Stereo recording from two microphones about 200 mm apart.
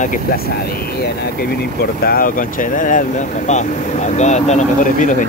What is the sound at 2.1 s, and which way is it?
Speech, 45° left (ahead or behind).